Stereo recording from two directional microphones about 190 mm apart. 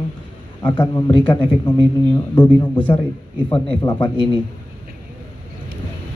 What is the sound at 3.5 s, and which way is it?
Speech, 25° left (ahead or behind).